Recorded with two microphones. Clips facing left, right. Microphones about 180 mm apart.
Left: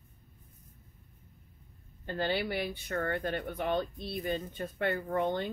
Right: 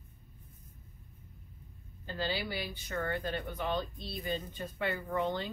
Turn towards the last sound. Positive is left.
turn(degrees=55)  # may be behind; listen again after turning